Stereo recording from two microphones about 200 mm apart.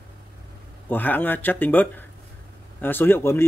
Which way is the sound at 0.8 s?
10° left (ahead or behind).